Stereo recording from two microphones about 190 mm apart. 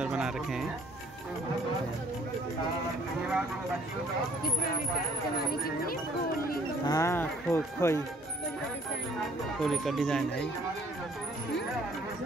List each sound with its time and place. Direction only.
0.0 s music: 5° right (ahead or behind)
6.9 s speech: 15° left (ahead or behind)
9.6 s speech: centre (ahead or behind)